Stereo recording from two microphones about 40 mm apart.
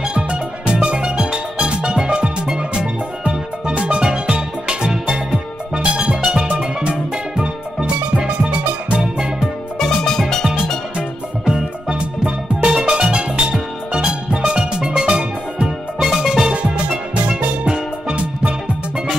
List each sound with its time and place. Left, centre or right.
0.0 s music: right
9.8 s music: centre
11.0 s music: centre
16.0 s music: centre